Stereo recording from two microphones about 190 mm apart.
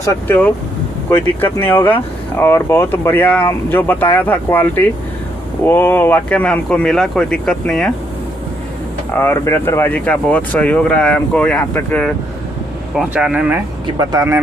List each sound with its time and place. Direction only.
0.1 s speech: 10° left (ahead or behind)
9.1 s speech: 15° left (ahead or behind)
12.9 s speech: 5° right (ahead or behind)